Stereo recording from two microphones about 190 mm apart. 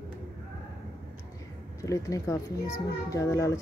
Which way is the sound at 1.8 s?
15° left (ahead or behind).